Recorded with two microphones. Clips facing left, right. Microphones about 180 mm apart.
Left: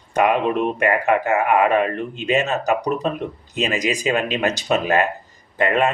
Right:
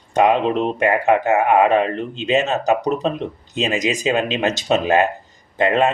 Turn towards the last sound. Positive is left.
turn(degrees=-25)  # may be behind; listen again after turning